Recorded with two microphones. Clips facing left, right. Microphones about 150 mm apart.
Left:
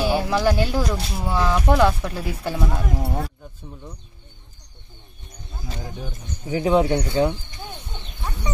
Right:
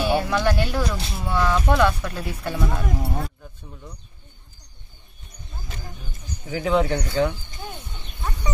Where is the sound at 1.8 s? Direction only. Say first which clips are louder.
Left 2 dB; 25° left (ahead or behind).